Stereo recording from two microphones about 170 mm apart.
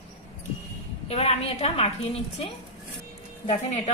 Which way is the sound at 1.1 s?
35° left (ahead or behind).